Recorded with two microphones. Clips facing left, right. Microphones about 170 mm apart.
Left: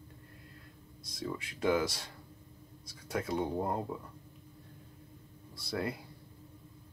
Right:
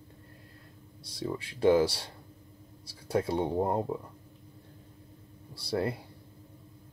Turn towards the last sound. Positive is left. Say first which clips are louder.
# right 5 dB
turn(degrees=-30)  # may be behind; listen again after turning